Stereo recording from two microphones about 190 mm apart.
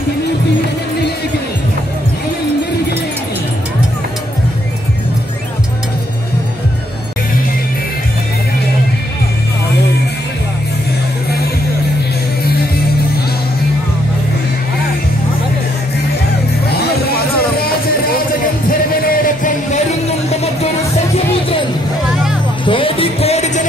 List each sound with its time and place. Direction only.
18.7 s music: 45° left (ahead or behind)
22.7 s music: 30° left (ahead or behind)